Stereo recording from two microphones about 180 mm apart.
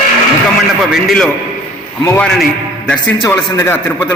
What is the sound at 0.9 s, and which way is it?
A man's voice, 5° left (ahead or behind).